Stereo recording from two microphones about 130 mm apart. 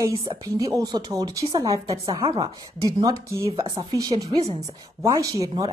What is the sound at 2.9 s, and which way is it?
Speech, 25° right (ahead or behind).